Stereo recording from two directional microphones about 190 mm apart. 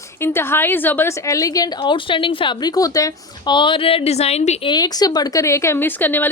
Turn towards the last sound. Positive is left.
turn(degrees=10)  # may be behind; listen again after turning